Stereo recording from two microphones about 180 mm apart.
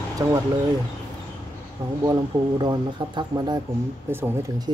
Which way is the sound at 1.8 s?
25° right (ahead or behind).